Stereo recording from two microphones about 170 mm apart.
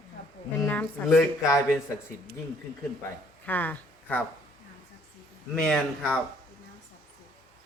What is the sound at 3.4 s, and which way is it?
Speech, 10° left (ahead or behind).